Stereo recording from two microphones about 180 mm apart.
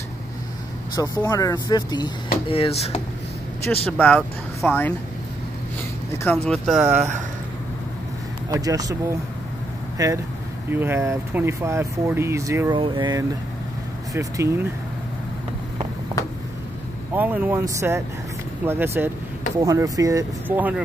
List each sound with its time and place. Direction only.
0.9 s speech: 20° left (ahead or behind)
2.5 s speech: 35° left (ahead or behind)
3.7 s speech: 5° left (ahead or behind)
6.1 s speech: 10° left (ahead or behind)
6.8 s speech: 10° right (ahead or behind)
8.5 s speech: 20° right (ahead or behind)
17.1 s speech: 10° right (ahead or behind)